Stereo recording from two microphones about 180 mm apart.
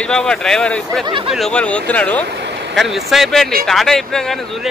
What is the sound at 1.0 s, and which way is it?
Speech, 25° right (ahead or behind).